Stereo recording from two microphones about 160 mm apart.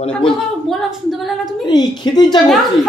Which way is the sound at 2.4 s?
Centre (ahead or behind).